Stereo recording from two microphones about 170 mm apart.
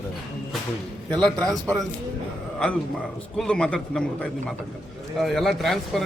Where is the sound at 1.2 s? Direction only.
5° left (ahead or behind).